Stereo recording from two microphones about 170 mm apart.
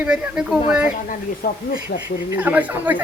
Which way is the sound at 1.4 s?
60° left (ahead or behind).